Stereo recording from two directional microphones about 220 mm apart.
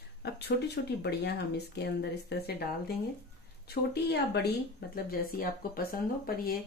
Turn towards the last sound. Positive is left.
turn(degrees=40)  # may be behind; listen again after turning